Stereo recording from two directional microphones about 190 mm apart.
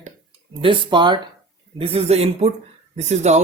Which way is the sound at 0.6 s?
25° right (ahead or behind).